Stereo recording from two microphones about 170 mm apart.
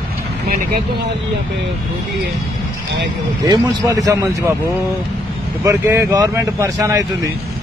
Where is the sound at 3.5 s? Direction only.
25° right (ahead or behind).